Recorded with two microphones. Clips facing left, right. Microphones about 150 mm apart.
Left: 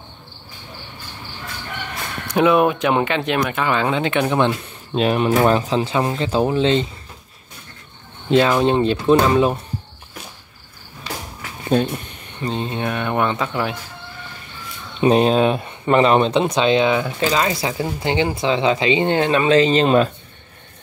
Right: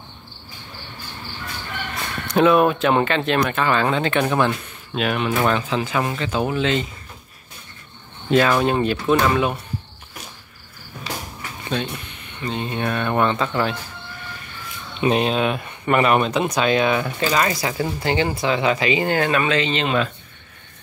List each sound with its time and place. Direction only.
2.2 s speech: 15° left (ahead or behind)
4.9 s speech: 30° left (ahead or behind)
8.3 s speech: 20° left (ahead or behind)
12.4 s speech: 30° left (ahead or behind); by 13.7 s 10° left (ahead or behind)
15.0 s speech: 35° left (ahead or behind)